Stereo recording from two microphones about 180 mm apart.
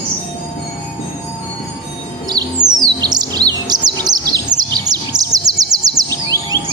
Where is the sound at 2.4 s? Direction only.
25° right (ahead or behind).